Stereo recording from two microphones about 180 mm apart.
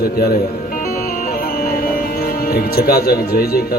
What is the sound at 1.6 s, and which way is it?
Speech, 55° left (ahead or behind).